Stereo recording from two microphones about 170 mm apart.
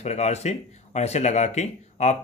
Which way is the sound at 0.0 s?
40° left (ahead or behind).